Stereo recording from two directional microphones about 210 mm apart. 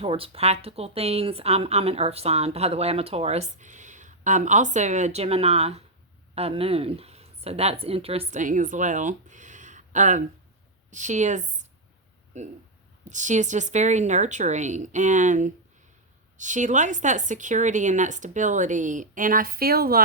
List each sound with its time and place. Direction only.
0.0 s a woman's voice: 25° right (ahead or behind)
13.1 s a woman's voice: 35° right (ahead or behind)